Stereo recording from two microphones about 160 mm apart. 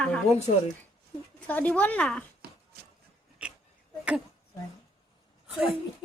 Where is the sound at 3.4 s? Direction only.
5° right (ahead or behind).